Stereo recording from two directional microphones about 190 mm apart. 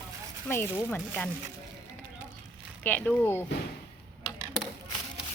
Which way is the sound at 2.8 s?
10° left (ahead or behind).